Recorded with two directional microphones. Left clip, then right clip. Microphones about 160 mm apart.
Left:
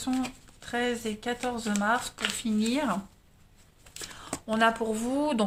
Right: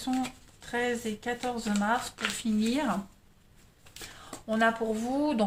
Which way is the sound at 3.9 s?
35° left (ahead or behind).